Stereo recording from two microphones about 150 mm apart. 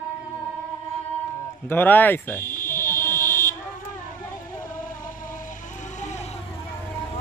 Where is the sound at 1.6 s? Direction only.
15° left (ahead or behind).